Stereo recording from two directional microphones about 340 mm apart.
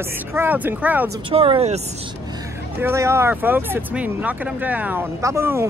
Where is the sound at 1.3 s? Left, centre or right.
Centre.